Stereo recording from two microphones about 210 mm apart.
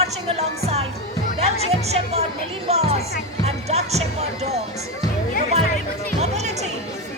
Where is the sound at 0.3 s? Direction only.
30° right (ahead or behind).